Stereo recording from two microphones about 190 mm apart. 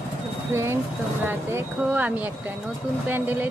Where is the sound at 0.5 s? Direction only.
15° right (ahead or behind).